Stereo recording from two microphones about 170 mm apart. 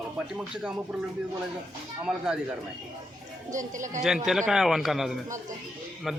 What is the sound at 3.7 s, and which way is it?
Speech, 45° right (ahead or behind).